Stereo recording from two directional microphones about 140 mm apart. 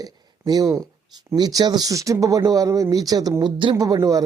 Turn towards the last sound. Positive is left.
turn(degrees=-25)  # may be behind; listen again after turning